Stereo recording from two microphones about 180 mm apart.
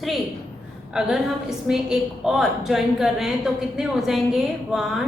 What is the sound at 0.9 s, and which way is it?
A woman's voice, 5° right (ahead or behind).